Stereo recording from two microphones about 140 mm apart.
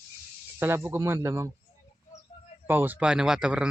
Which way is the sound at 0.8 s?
15° right (ahead or behind).